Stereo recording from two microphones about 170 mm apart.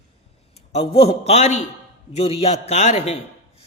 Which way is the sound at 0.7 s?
35° left (ahead or behind).